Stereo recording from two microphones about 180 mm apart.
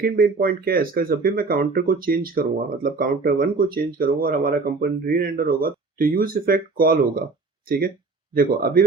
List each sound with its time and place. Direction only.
0.0 s speech: 55° right (ahead or behind)
8.4 s speech: 55° right (ahead or behind)